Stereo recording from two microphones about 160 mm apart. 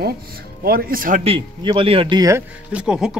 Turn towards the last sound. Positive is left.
turn(degrees=-5)  # may be behind; listen again after turning